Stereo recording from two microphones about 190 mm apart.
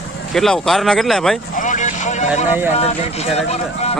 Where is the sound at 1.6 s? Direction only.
40° left (ahead or behind).